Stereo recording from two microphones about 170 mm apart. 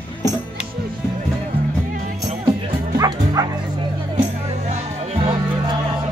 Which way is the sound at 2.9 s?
20° right (ahead or behind).